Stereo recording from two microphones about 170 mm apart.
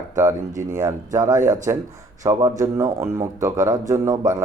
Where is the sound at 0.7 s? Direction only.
20° right (ahead or behind).